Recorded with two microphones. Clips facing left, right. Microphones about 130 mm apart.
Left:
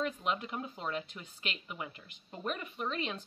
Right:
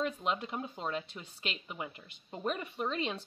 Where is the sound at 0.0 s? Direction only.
25° right (ahead or behind).